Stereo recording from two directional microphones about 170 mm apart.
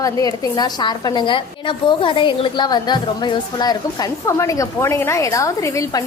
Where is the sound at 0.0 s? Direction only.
20° left (ahead or behind).